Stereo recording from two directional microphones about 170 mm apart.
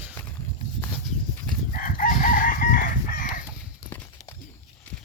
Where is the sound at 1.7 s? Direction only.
55° left (ahead or behind).